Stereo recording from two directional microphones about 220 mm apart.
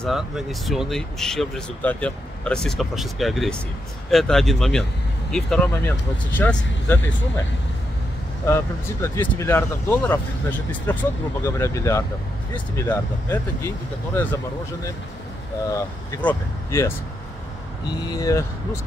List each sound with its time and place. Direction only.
0.0 s speech: centre (ahead or behind)
8.5 s speech: 10° left (ahead or behind)
15.7 s speech: 10° left (ahead or behind)
18.0 s speech: 15° left (ahead or behind)